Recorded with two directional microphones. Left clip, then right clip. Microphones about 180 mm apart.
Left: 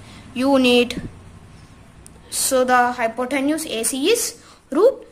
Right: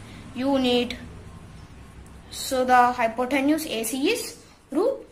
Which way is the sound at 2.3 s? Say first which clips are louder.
Left 4 dB; 30° left (ahead or behind).